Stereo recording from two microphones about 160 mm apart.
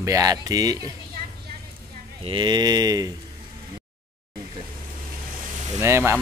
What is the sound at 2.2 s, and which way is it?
Speech, 30° right (ahead or behind).